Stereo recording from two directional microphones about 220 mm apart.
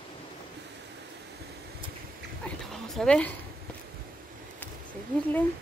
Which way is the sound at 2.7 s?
5° left (ahead or behind).